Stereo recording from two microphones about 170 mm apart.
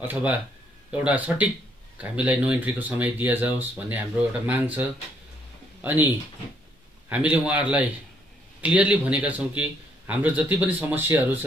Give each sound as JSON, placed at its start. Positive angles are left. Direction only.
{"t": 0.0, "sound": "speech", "side_deg": -10}